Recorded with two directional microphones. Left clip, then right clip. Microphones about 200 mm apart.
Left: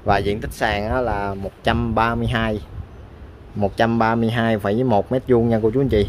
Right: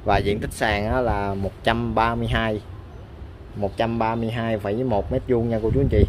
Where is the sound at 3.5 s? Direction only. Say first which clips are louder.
Left 5 dB; 35° left (ahead or behind).